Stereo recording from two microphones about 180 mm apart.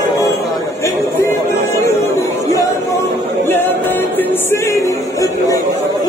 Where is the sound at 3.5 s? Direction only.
10° left (ahead or behind).